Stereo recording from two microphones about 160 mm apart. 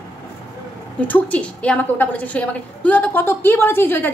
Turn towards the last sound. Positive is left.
turn(degrees=15)  # may be behind; listen again after turning